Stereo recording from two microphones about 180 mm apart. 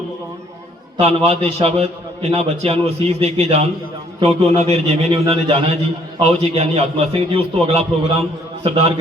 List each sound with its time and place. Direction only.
0.9 s a man's voice: 35° right (ahead or behind)